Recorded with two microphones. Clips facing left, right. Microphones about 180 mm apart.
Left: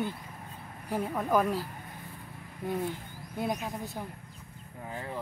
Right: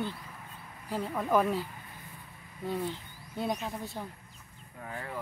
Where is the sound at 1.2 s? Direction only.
Centre (ahead or behind).